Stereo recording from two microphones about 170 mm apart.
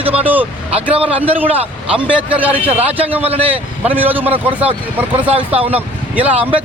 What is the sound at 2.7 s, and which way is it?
Speech, 35° right (ahead or behind).